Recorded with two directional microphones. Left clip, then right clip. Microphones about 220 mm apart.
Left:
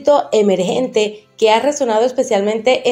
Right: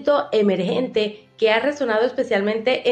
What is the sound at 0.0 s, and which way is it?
A woman's voice, 15° left (ahead or behind).